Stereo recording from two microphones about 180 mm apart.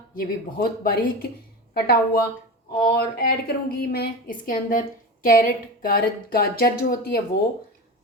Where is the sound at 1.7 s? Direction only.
60° left (ahead or behind).